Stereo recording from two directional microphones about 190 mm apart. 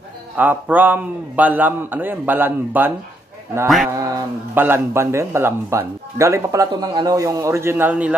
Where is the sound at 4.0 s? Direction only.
15° right (ahead or behind).